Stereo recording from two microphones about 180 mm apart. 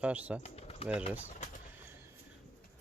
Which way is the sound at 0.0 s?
5° right (ahead or behind).